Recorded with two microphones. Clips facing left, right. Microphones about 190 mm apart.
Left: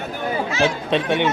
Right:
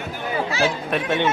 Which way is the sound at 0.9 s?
15° left (ahead or behind).